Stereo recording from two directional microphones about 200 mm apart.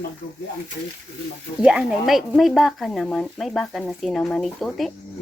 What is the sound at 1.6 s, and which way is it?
Speech, 5° right (ahead or behind).